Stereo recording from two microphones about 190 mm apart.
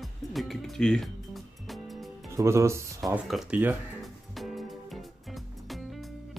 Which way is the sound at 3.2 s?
5° right (ahead or behind).